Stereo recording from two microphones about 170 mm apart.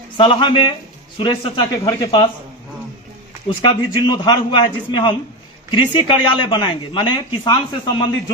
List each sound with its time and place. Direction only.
0.2 s a man's voice: 30° left (ahead or behind)
3.6 s speech: 25° left (ahead or behind)